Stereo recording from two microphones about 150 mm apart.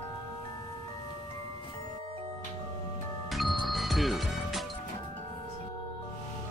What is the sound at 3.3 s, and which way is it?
Music, centre (ahead or behind).